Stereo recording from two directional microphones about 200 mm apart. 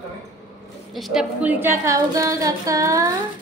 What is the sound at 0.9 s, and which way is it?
Female singing, centre (ahead or behind).